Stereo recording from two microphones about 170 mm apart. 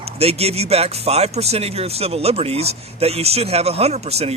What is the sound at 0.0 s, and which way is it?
Speech, 35° right (ahead or behind).